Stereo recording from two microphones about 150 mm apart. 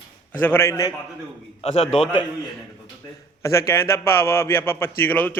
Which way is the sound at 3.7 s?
15° left (ahead or behind).